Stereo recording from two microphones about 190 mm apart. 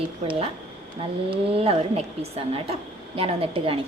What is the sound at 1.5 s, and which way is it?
A woman's voice, 30° right (ahead or behind).